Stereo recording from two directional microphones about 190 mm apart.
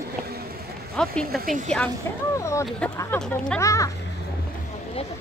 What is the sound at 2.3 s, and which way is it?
Speech, 15° left (ahead or behind).